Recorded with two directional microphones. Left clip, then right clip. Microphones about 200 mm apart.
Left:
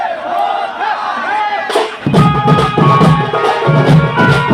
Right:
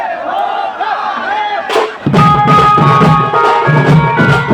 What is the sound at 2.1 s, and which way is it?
Music, 10° right (ahead or behind).